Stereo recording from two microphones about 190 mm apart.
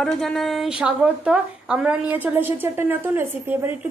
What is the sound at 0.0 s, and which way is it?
A woman's voice, centre (ahead or behind).